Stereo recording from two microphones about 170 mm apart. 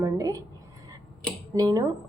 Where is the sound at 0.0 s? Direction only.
20° right (ahead or behind).